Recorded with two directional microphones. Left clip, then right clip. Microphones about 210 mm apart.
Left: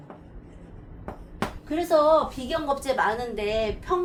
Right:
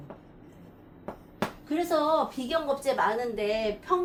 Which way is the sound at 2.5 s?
20° left (ahead or behind).